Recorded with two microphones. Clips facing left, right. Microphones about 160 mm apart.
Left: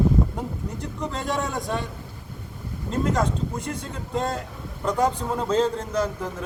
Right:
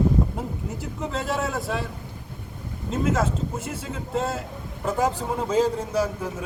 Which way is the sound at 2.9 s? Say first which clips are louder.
Even; 5° right (ahead or behind).